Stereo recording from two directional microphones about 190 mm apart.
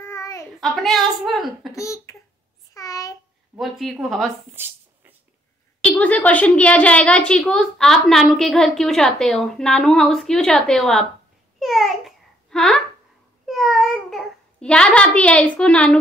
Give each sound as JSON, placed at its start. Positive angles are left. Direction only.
{"t": 0.0, "sound": "a sound", "side_deg": 15}
{"t": 0.6, "sound": "a woman's voice", "side_deg": 0}
{"t": 1.7, "sound": "speech", "side_deg": 15}
{"t": 2.7, "sound": "a sound", "side_deg": 20}
{"t": 3.5, "sound": "a woman's voice", "side_deg": 0}
{"t": 5.8, "sound": "a woman's voice", "side_deg": 5}
{"t": 11.6, "sound": "babbling", "side_deg": 0}
{"t": 13.5, "sound": "a child's voice", "side_deg": 0}